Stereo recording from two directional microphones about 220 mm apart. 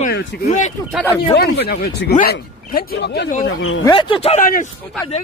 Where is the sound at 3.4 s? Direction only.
60° left (ahead or behind).